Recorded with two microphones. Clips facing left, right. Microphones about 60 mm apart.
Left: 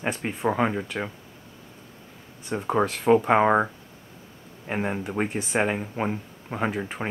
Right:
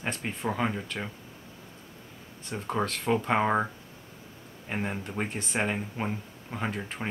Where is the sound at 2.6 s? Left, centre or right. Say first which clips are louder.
Left 7 dB; centre.